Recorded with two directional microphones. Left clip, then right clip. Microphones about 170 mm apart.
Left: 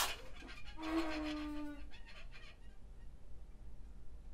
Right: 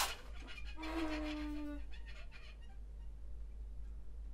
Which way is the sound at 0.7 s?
10° left (ahead or behind).